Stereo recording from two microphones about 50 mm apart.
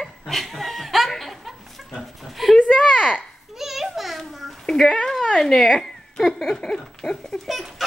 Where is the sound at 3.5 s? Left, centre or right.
Centre.